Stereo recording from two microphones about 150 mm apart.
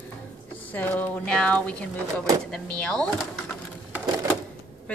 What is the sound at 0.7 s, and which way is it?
A woman's voice, 10° left (ahead or behind).